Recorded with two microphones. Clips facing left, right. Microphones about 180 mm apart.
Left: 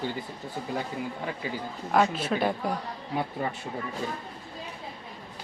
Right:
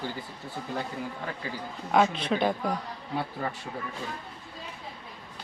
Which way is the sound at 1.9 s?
5° left (ahead or behind).